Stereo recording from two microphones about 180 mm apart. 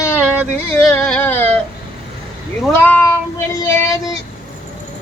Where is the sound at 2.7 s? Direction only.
10° left (ahead or behind).